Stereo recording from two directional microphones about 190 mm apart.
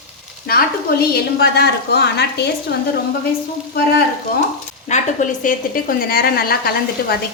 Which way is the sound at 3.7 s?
55° left (ahead or behind).